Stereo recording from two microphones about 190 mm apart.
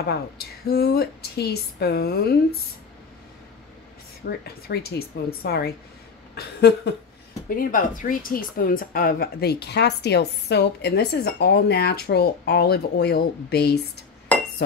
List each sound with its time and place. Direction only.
0.7 s speech: 55° left (ahead or behind)
4.3 s speech: 60° left (ahead or behind)
7.4 s speech: 45° left (ahead or behind)
14.3 s chink: 10° left (ahead or behind)